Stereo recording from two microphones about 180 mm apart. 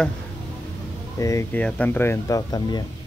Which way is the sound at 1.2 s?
15° left (ahead or behind).